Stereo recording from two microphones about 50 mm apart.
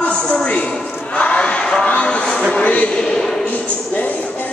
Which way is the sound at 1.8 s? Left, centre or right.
Left.